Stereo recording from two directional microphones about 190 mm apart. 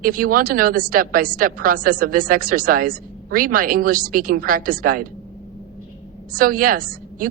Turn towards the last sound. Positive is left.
turn(degrees=-45)  # may be behind; listen again after turning